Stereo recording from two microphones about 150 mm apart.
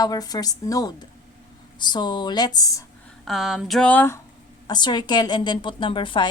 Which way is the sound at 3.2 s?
Centre (ahead or behind).